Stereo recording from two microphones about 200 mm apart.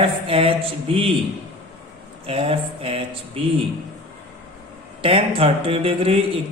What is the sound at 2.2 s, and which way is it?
Mantra, 30° right (ahead or behind).